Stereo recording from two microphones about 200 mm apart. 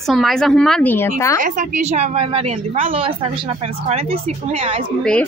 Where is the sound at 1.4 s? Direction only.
40° right (ahead or behind).